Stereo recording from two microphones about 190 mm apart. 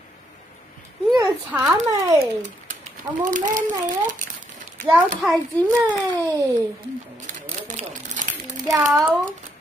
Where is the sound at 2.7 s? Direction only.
40° right (ahead or behind).